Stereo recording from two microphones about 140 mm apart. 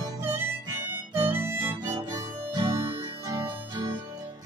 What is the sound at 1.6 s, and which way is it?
Harmonica, 30° right (ahead or behind).